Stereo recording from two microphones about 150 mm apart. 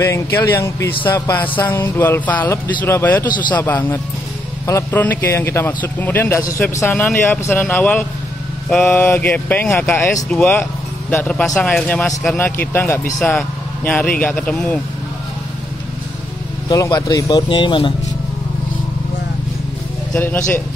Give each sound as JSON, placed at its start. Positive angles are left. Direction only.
{"t": 0.0, "sound": "speech", "side_deg": 20}
{"t": 16.6, "sound": "speech", "side_deg": 25}
{"t": 20.2, "sound": "speech", "side_deg": 10}